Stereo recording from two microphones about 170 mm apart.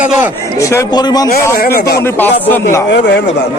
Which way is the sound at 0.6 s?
15° left (ahead or behind).